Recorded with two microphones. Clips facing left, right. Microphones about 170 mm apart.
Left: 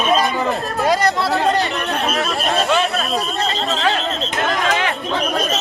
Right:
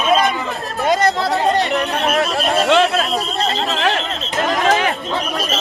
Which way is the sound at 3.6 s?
65° right (ahead or behind).